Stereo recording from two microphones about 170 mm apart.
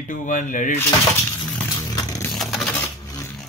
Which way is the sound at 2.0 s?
20° left (ahead or behind).